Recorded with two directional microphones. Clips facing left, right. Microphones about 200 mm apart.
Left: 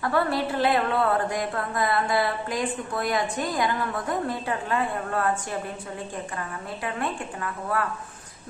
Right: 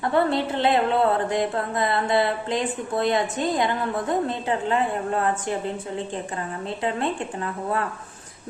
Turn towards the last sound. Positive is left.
turn(degrees=-25)  # may be behind; listen again after turning